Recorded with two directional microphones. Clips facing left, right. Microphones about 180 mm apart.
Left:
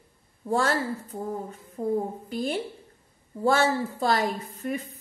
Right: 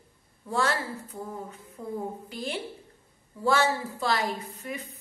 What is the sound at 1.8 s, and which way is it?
A woman's voice, 40° left (ahead or behind).